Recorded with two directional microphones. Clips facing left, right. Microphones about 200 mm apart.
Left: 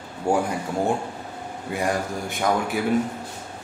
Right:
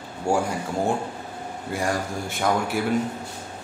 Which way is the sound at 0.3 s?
20° left (ahead or behind).